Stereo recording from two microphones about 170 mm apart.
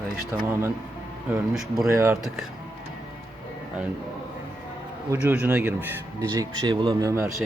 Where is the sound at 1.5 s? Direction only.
Centre (ahead or behind).